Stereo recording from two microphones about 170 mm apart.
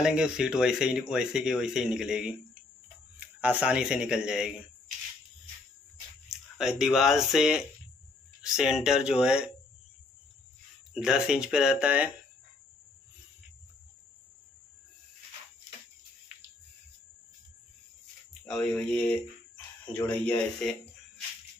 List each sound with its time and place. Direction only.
0.0 s speech: 5° right (ahead or behind)
6.2 s speech: centre (ahead or behind)
10.9 s speech: 5° right (ahead or behind)
18.5 s speech: 5° left (ahead or behind)